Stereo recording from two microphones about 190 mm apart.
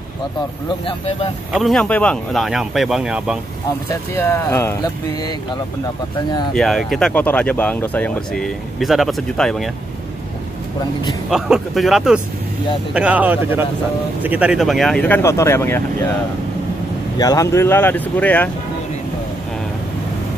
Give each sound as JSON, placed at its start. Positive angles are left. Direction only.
{"t": 0.7, "sound": "speech", "side_deg": 25}
{"t": 1.5, "sound": "speech", "side_deg": 0}
{"t": 3.9, "sound": "speech", "side_deg": 15}
{"t": 6.5, "sound": "speech", "side_deg": 0}
{"t": 11.2, "sound": "speech", "side_deg": 0}
{"t": 17.2, "sound": "speech", "side_deg": 15}